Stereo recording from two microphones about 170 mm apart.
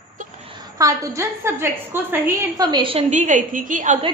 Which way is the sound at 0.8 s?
20° right (ahead or behind).